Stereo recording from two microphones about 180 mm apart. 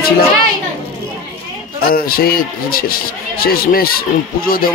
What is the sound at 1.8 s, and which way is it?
Speech, 55° left (ahead or behind).